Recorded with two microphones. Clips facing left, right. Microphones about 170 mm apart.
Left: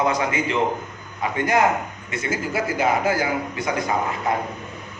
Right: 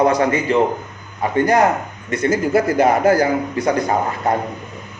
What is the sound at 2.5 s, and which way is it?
Speech, 60° right (ahead or behind).